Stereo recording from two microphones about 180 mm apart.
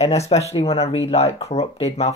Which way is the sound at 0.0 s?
35° left (ahead or behind).